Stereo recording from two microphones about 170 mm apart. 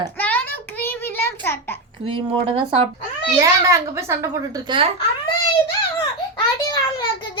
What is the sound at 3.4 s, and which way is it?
A woman's voice, 15° right (ahead or behind).